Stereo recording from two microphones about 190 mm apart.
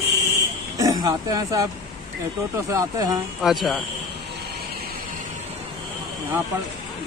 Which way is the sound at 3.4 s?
Centre (ahead or behind).